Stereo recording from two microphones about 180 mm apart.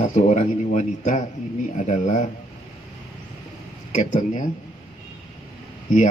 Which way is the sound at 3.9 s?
40° left (ahead or behind).